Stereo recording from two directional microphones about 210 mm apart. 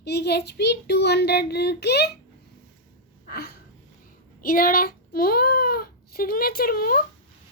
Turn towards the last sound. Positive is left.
turn(degrees=45)  # may be behind; listen again after turning